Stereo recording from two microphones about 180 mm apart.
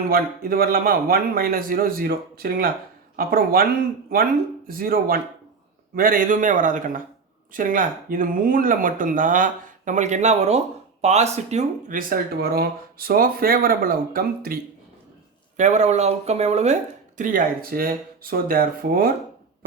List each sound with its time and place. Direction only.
0.1 s a man's voice: 55° right (ahead or behind)
15.5 s speech: 40° right (ahead or behind)
17.2 s speech: 50° right (ahead or behind)